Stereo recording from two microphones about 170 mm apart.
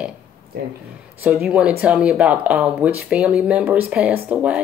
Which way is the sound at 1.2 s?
10° right (ahead or behind).